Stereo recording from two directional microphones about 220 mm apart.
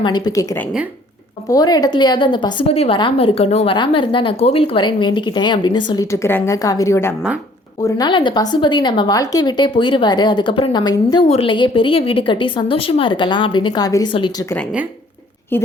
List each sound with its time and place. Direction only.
0.0 s a woman's voice: 20° left (ahead or behind)
15.5 s a woman's voice: 10° left (ahead or behind)